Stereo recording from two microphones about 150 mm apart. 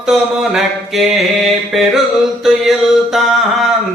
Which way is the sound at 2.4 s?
Centre (ahead or behind).